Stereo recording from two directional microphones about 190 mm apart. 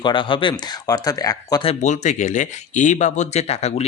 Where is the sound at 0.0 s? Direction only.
25° left (ahead or behind).